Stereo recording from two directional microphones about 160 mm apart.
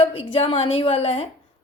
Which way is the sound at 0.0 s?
35° left (ahead or behind).